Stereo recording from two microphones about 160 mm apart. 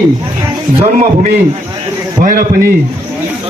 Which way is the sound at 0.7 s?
40° right (ahead or behind).